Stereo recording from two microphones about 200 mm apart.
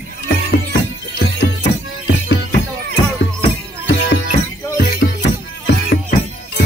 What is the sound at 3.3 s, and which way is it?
Music, 50° left (ahead or behind).